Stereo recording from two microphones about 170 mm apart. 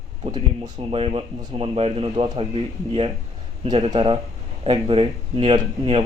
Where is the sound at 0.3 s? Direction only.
30° right (ahead or behind).